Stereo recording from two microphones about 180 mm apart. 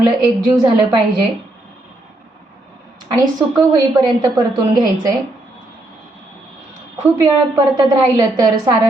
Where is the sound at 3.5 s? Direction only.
20° right (ahead or behind).